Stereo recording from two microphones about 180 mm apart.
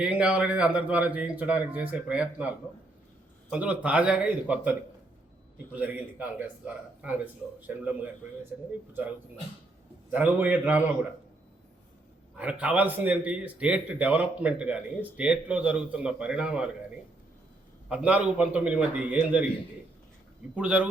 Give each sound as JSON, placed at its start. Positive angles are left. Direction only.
{"t": 0.0, "sound": "a man's voice", "side_deg": -5}
{"t": 5.7, "sound": "a man's voice", "side_deg": -10}
{"t": 7.7, "sound": "a man's voice", "side_deg": -10}
{"t": 10.1, "sound": "a man's voice", "side_deg": -10}
{"t": 12.4, "sound": "a man's voice", "side_deg": -5}
{"t": 17.8, "sound": "a man's voice", "side_deg": -5}
{"t": 20.6, "sound": "a man's voice", "side_deg": -5}